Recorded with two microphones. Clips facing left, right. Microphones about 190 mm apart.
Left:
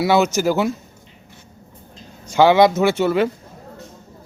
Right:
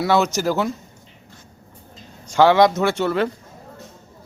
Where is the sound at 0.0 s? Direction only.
5° left (ahead or behind).